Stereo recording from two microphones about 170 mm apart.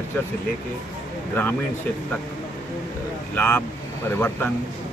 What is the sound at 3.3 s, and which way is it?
Speech, 10° left (ahead or behind).